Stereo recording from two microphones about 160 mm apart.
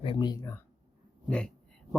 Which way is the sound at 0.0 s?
30° left (ahead or behind).